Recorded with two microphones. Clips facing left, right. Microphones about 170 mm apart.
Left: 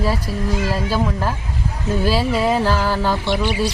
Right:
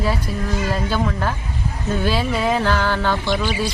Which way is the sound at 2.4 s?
5° left (ahead or behind).